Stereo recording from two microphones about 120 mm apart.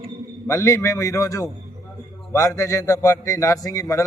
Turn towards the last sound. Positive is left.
turn(degrees=25)  # may be behind; listen again after turning